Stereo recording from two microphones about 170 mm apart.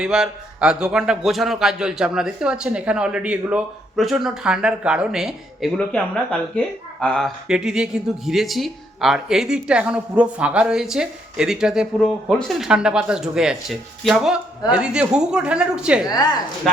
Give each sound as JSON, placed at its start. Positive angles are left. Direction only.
{"t": 0.0, "sound": "speech", "side_deg": -5}
{"t": 7.0, "sound": "speech", "side_deg": 0}
{"t": 16.0, "sound": "speech", "side_deg": 20}